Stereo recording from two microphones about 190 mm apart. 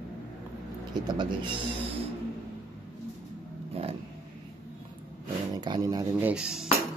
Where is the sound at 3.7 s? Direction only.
30° right (ahead or behind).